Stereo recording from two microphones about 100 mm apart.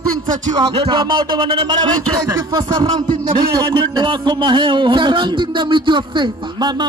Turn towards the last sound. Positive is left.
turn(degrees=-50)  # may be behind; listen again after turning